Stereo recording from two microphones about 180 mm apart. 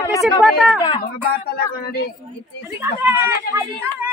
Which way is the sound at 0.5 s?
Centre (ahead or behind).